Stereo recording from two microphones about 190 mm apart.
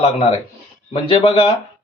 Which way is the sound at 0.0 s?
30° left (ahead or behind).